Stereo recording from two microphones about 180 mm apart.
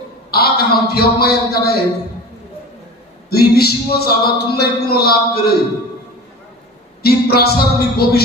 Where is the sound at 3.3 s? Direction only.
60° left (ahead or behind).